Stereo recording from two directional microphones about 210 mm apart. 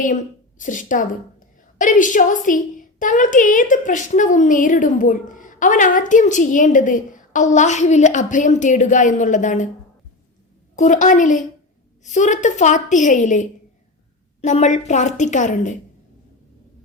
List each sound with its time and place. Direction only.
0.6 s a woman's voice: 40° left (ahead or behind)
10.8 s a woman's voice: 35° left (ahead or behind)